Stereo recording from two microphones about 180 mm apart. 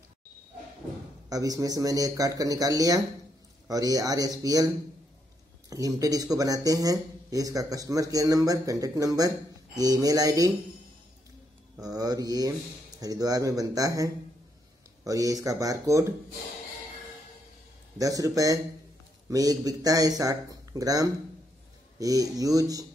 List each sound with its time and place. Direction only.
1.3 s speech: 20° right (ahead or behind)
5.7 s speech: 20° right (ahead or behind)
11.8 s speech: 20° right (ahead or behind)
17.9 s speech: 20° right (ahead or behind)